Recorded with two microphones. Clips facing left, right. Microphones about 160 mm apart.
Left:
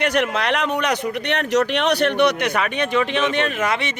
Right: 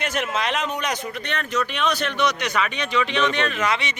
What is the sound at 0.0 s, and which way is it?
Speech, 65° left (ahead or behind).